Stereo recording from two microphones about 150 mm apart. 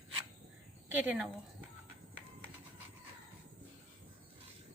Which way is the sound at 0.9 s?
10° right (ahead or behind).